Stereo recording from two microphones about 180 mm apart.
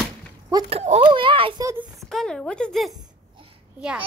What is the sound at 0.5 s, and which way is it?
Speech, 20° right (ahead or behind).